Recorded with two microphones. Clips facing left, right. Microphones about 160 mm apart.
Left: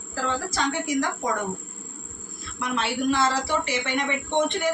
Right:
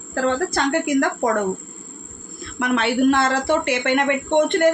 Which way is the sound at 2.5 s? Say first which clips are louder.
Right 8 dB; 65° right (ahead or behind).